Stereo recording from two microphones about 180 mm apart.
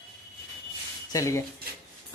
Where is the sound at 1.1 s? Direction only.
15° left (ahead or behind).